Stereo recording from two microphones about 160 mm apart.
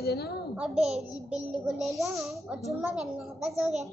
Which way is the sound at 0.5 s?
5° right (ahead or behind).